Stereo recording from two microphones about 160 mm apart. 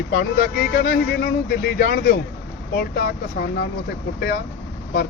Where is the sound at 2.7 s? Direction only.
90° left.